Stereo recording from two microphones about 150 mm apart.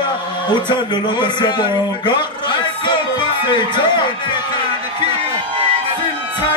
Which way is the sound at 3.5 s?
30° left (ahead or behind).